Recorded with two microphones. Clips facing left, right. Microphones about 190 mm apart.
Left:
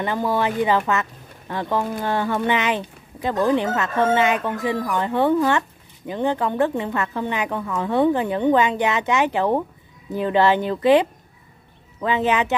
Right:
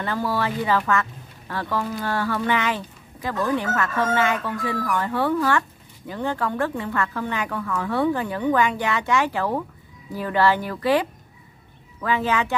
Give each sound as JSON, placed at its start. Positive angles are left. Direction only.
{"t": 0.0, "sound": "speech", "side_deg": 20}